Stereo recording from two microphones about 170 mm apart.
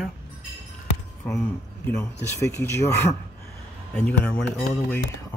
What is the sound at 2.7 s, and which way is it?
Speech, 15° left (ahead or behind).